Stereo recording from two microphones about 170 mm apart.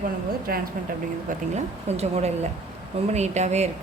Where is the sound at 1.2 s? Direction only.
40° right (ahead or behind).